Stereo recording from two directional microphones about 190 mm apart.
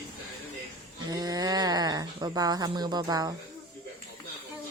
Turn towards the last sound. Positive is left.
turn(degrees=-20)  # may be behind; listen again after turning